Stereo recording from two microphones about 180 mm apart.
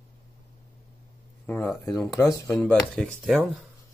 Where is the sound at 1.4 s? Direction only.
10° left (ahead or behind).